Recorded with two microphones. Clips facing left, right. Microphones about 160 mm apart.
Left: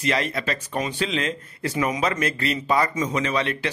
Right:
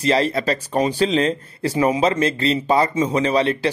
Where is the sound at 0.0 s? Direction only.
30° right (ahead or behind).